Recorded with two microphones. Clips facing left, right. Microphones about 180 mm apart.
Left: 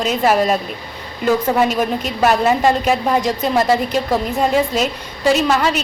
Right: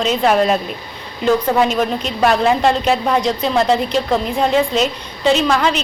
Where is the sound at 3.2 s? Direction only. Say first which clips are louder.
Right 1 dB; 50° left (ahead or behind).